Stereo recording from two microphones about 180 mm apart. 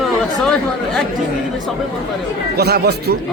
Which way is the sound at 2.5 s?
60° right (ahead or behind).